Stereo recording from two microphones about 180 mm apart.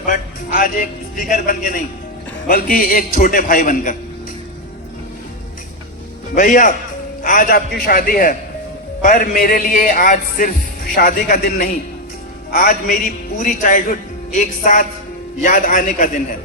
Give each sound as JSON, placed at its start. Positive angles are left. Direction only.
{"t": 0.0, "sound": "music", "side_deg": 50}
{"t": 2.5, "sound": "speech", "side_deg": 55}
{"t": 6.3, "sound": "speech", "side_deg": 45}